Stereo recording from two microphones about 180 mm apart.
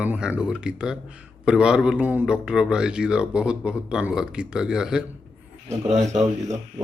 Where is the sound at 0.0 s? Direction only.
5° right (ahead or behind).